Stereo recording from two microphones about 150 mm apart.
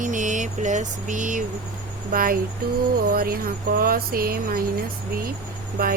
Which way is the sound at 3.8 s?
80° right.